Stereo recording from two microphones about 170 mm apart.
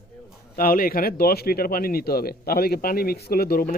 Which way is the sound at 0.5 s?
55° left (ahead or behind).